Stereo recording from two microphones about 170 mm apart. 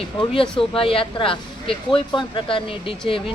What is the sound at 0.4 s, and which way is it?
Speech, 5° left (ahead or behind).